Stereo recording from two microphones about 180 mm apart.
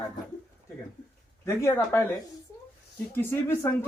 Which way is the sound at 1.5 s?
15° left (ahead or behind).